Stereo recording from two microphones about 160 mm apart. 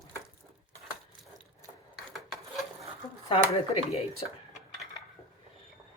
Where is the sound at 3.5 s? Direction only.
40° left (ahead or behind).